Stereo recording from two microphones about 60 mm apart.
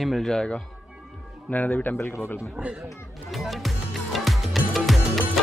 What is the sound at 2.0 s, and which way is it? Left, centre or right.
Speech, left.